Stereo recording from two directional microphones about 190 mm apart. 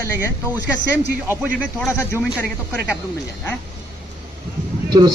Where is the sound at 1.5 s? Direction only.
5° left (ahead or behind).